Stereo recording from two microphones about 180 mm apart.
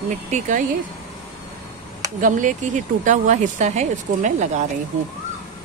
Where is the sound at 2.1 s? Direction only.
45° right (ahead or behind).